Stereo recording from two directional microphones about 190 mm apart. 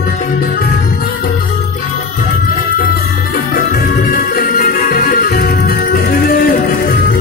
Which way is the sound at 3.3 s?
50° left (ahead or behind).